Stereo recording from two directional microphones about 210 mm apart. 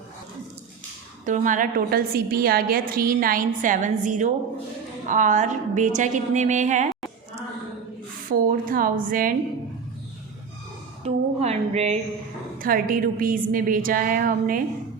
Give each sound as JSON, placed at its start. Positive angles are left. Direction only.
{"t": 1.2, "sound": "a woman's voice", "side_deg": -40}
{"t": 8.3, "sound": "a woman's voice", "side_deg": -40}
{"t": 11.0, "sound": "a woman's voice", "side_deg": -30}
{"t": 12.5, "sound": "a woman's voice", "side_deg": -40}